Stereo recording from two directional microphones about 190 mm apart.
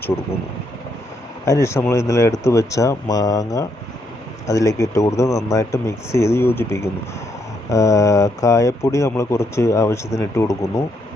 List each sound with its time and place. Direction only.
1.5 s speech: 15° left (ahead or behind)